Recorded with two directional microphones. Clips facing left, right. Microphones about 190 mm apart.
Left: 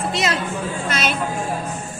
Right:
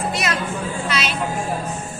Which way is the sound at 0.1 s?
25° left (ahead or behind).